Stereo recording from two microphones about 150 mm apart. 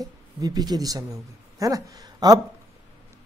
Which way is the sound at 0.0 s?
25° right (ahead or behind).